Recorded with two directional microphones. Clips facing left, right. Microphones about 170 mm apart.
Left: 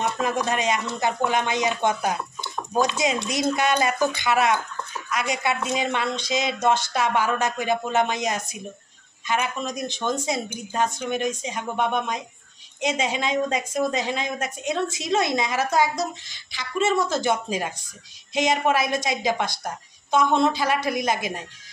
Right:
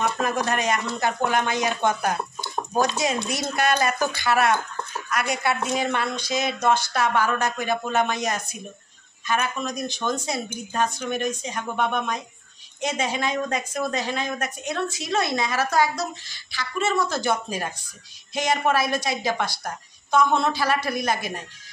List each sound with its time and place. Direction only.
0.2 s a woman's voice: 20° left (ahead or behind)